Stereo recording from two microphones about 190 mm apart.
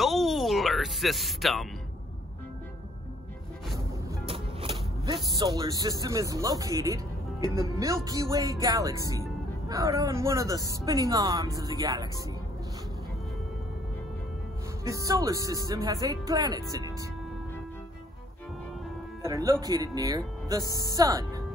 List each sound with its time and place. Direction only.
0.0 s a sound: centre (ahead or behind)
4.3 s music: 30° right (ahead or behind)
6.0 s speech: 15° right (ahead or behind)
14.9 s speech: 15° right (ahead or behind)
19.2 s speech: 15° right (ahead or behind)
20.6 s speech: 20° left (ahead or behind)
20.9 s speech: 20° right (ahead or behind)